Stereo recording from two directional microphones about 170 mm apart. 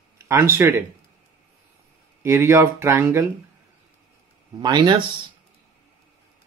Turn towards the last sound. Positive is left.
turn(degrees=-25)  # may be behind; listen again after turning